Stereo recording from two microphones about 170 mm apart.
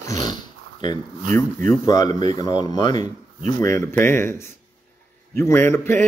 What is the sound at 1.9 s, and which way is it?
A man's voice, 25° left (ahead or behind).